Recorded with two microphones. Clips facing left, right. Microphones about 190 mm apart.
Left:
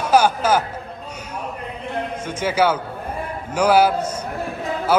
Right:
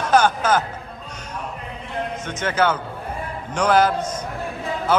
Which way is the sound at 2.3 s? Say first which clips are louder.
Left 2 dB; 10° left (ahead or behind).